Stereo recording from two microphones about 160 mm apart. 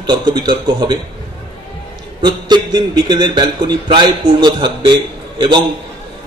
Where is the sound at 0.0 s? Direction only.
30° right (ahead or behind).